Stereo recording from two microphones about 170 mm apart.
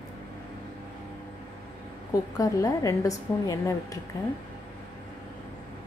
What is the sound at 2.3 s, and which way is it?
A woman's voice, 20° left (ahead or behind).